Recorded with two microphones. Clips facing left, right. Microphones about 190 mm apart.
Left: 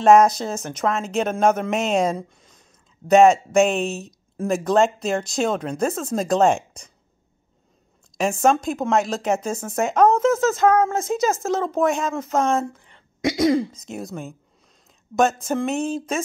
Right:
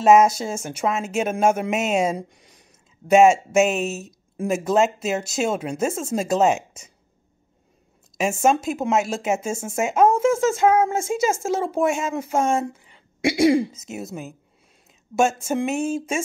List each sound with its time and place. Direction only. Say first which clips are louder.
0.0 s speech: left 1 dB; 5° right (ahead or behind)
8.5 s speech: left 1 dB; 5° right (ahead or behind)
9.5 s speech: even; 25° right (ahead or behind)
9.8 s speech: left 1 dB; 5° right (ahead or behind)
15.4 s speech: even; 10° right (ahead or behind)